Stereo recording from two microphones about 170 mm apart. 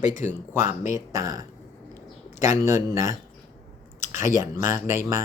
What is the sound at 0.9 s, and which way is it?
Speech, 20° right (ahead or behind).